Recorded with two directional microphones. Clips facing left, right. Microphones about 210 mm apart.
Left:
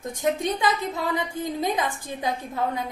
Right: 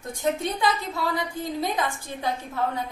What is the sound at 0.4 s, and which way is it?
A woman's voice, 20° left (ahead or behind).